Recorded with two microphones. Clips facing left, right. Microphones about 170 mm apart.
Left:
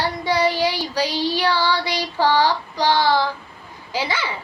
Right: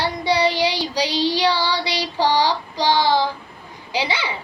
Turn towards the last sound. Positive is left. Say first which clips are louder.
# right 1 dB
turn(degrees=-15)  # may be behind; listen again after turning